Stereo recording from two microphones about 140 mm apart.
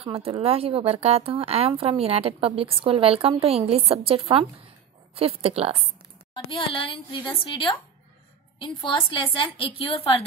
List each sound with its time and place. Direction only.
0.0 s speech: 45° right (ahead or behind)
6.3 s a woman's voice: 35° left (ahead or behind)